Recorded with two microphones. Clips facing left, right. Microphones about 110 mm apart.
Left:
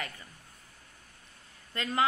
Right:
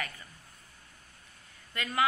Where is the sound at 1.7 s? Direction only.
25° left (ahead or behind).